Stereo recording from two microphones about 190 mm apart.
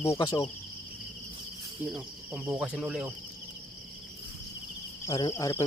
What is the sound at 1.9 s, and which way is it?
Speech, 5° right (ahead or behind).